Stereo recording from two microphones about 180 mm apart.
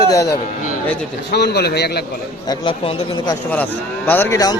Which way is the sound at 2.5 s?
25° left (ahead or behind).